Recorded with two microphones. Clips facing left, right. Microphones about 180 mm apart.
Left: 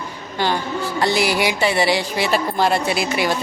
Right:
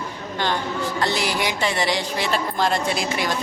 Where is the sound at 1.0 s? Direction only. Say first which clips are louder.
Left 6 dB; 10° left (ahead or behind).